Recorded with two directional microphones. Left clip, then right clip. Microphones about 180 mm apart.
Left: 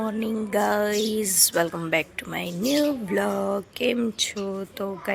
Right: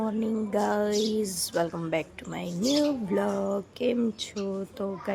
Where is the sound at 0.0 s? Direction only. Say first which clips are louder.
Left 2 dB; 5° right (ahead or behind).